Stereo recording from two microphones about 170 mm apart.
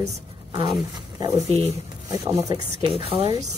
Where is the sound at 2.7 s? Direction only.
35° right (ahead or behind).